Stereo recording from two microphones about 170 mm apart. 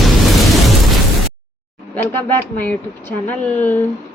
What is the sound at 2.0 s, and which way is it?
Speech, 10° left (ahead or behind).